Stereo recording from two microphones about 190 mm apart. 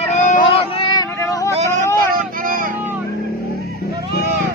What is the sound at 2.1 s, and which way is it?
Vehicle, 45° right (ahead or behind).